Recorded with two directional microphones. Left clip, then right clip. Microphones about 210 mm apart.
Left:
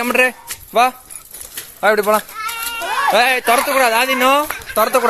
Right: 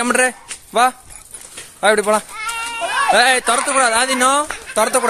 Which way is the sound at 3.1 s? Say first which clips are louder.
Even; 10° right (ahead or behind).